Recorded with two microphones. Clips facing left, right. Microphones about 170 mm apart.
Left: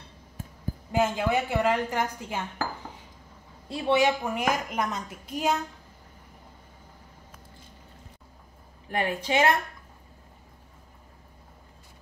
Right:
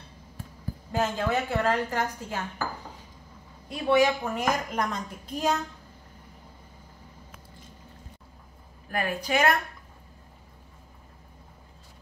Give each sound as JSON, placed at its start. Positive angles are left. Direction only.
{"t": 0.9, "sound": "a woman's voice", "side_deg": 15}
{"t": 3.6, "sound": "speech", "side_deg": 25}
{"t": 4.2, "sound": "a woman's voice", "side_deg": 10}
{"t": 8.8, "sound": "a woman's voice", "side_deg": 25}